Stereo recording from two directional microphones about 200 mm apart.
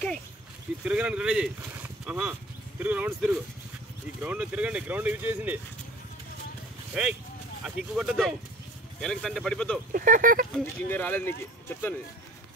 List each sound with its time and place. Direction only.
0.8 s speech: 5° right (ahead or behind)
6.9 s speech: 5° right (ahead or behind)
9.9 s speech: 40° right (ahead or behind)
10.5 s speech: 10° left (ahead or behind)